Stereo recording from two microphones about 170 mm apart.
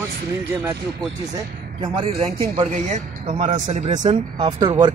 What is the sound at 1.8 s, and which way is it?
Speech, 30° right (ahead or behind).